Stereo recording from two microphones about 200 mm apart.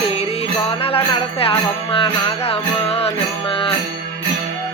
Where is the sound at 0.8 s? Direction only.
30° left (ahead or behind).